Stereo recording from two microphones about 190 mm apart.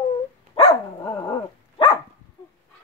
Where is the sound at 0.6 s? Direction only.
30° left (ahead or behind).